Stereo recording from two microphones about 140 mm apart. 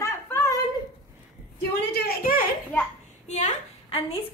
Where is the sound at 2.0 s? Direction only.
90° left.